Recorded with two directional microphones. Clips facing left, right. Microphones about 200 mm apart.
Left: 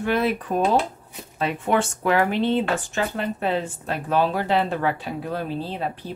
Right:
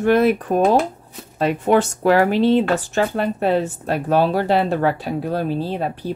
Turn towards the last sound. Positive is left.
turn(degrees=-40)  # may be behind; listen again after turning